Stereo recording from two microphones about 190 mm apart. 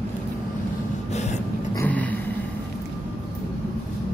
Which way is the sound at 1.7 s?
10° left (ahead or behind).